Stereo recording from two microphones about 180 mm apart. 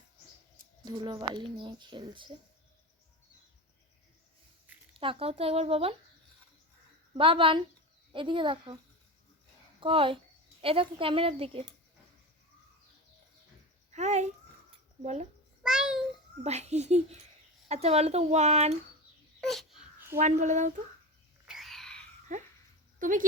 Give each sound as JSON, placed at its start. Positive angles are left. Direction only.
{"t": 0.9, "sound": "speech", "side_deg": -25}
{"t": 4.9, "sound": "speech", "side_deg": -30}
{"t": 7.1, "sound": "speech", "side_deg": -30}
{"t": 9.8, "sound": "speech", "side_deg": -30}
{"t": 13.9, "sound": "a child's voice", "side_deg": -40}
{"t": 15.6, "sound": "a child's voice", "side_deg": -5}
{"t": 16.4, "sound": "speech", "side_deg": -35}
{"t": 19.4, "sound": "a sound", "side_deg": 0}
{"t": 20.1, "sound": "speech", "side_deg": -40}
{"t": 21.4, "sound": "a sound", "side_deg": 0}
{"t": 22.3, "sound": "a sound", "side_deg": -45}
{"t": 23.0, "sound": "speech", "side_deg": -45}